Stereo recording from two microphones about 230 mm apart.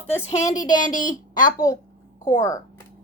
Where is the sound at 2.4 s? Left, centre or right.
Centre.